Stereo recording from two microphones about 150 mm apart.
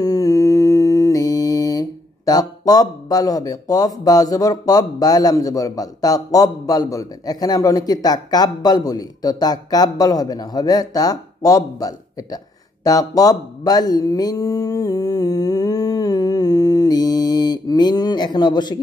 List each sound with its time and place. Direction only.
0.0 s mantra: 25° left (ahead or behind)